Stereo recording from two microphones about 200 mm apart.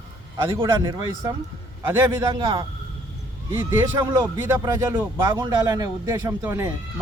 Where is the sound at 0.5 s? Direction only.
25° right (ahead or behind).